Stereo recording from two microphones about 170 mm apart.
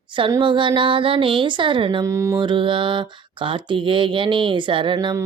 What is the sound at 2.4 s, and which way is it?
Mantra, 30° right (ahead or behind).